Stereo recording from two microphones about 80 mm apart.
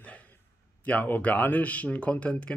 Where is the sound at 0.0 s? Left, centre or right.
Centre.